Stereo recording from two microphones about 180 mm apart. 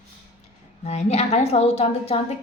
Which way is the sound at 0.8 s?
35° left (ahead or behind).